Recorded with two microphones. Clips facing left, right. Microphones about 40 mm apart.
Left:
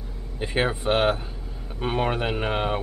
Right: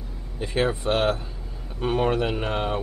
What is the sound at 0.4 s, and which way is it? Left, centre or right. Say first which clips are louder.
Speech: even; left.